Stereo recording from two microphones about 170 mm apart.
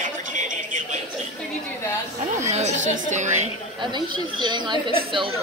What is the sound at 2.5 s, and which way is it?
Speech, 45° right (ahead or behind).